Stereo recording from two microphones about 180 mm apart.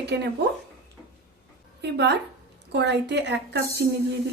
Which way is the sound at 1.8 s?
70° right (ahead or behind).